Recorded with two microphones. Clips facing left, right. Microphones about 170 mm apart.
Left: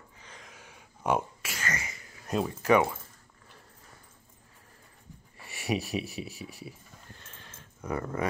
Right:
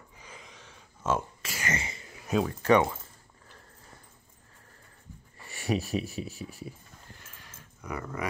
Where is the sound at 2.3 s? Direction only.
5° right (ahead or behind).